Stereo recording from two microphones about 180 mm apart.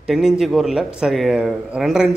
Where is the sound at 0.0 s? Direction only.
Centre (ahead or behind).